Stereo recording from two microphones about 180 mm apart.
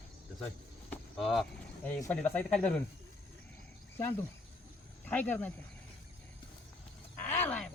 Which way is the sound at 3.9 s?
15° left (ahead or behind).